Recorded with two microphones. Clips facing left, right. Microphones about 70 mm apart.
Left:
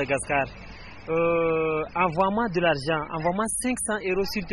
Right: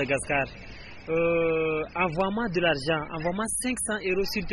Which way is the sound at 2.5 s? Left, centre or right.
Left.